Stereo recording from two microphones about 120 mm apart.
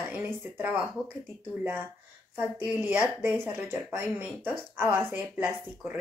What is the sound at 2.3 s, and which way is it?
Speech, 15° right (ahead or behind).